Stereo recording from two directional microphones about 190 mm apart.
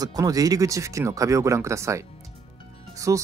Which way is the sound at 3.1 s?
15° right (ahead or behind).